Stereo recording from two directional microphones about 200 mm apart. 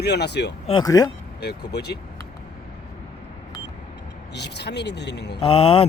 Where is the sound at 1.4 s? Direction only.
55° left (ahead or behind).